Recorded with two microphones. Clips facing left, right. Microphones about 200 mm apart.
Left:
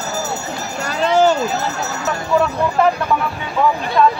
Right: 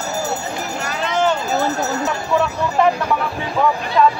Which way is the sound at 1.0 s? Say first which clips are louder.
Left 5 dB; 35° left (ahead or behind).